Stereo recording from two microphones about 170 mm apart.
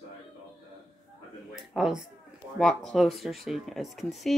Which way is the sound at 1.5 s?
Centre (ahead or behind).